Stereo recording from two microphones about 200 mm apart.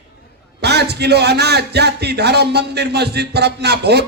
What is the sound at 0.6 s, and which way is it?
A man's voice, 55° right (ahead or behind).